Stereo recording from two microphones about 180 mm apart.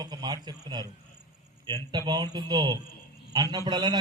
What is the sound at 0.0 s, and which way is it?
Mantra, 20° right (ahead or behind).